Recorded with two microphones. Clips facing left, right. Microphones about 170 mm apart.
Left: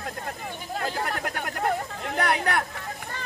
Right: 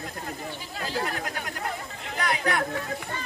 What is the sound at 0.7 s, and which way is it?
Speech, 55° left (ahead or behind).